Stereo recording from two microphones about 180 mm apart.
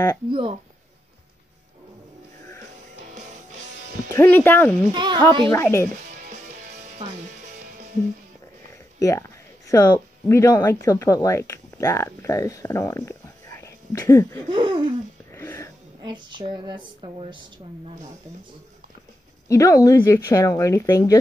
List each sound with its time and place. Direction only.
0.3 s speech: 30° right (ahead or behind)
3.1 s music: 45° right (ahead or behind)
4.1 s speech: 10° left (ahead or behind)
4.9 s speech: 25° right (ahead or behind)
5.5 s speech: 15° left (ahead or behind)
6.2 s music: 45° right (ahead or behind)
9.7 s speech: 15° left (ahead or behind)
14.5 s speech: 25° right (ahead or behind)
15.3 s wheeze: 15° left (ahead or behind)
16.3 s speech: 25° right (ahead or behind)
19.4 s speech: 15° left (ahead or behind)